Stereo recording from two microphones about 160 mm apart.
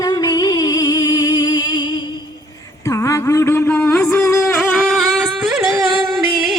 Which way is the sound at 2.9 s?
20° left (ahead or behind).